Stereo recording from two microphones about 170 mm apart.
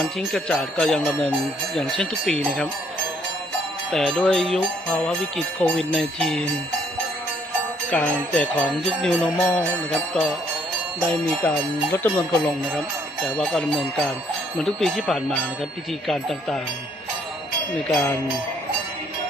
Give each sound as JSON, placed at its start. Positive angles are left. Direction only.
{"t": 0.0, "sound": "speech", "side_deg": 0}
{"t": 3.9, "sound": "speech", "side_deg": 5}
{"t": 7.9, "sound": "speech", "side_deg": 5}
{"t": 11.4, "sound": "speech", "side_deg": 10}
{"t": 13.2, "sound": "speech", "side_deg": 0}
{"t": 17.9, "sound": "speech", "side_deg": 15}